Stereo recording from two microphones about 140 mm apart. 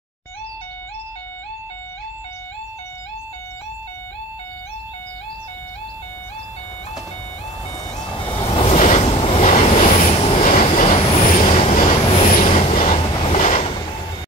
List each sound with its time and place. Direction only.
8.5 s train: 45° left (ahead or behind)
10.4 s train: 65° left (ahead or behind)